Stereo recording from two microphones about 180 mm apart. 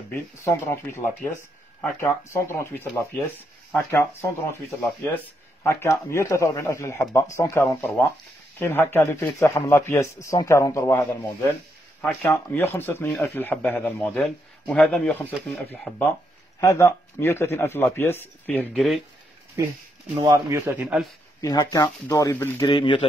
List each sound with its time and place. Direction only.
0.1 s speech: 15° left (ahead or behind)
20.2 s a man's voice: 20° right (ahead or behind)
21.4 s speech: 20° left (ahead or behind)
22.7 s speech: 25° left (ahead or behind)